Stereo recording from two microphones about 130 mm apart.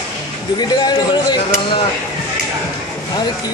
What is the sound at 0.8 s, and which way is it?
Speech, 35° left (ahead or behind).